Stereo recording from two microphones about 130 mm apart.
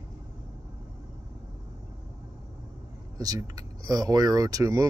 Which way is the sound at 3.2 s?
30° right (ahead or behind).